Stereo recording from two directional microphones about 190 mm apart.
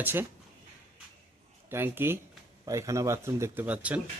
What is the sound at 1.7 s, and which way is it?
Speech, 10° right (ahead or behind).